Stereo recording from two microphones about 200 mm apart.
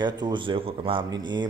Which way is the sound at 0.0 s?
20° right (ahead or behind).